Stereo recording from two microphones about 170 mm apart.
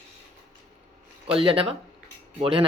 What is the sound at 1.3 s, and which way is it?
Speech, 30° right (ahead or behind).